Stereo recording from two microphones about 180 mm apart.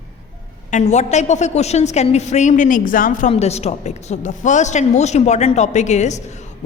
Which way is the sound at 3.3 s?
35° left (ahead or behind).